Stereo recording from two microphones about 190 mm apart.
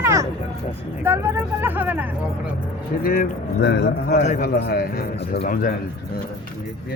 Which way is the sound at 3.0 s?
50° left (ahead or behind).